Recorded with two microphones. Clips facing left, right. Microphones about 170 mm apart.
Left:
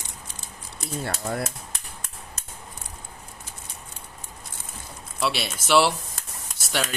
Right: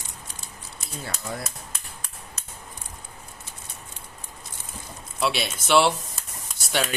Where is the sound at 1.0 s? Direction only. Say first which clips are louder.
Left 4 dB; 60° left (ahead or behind).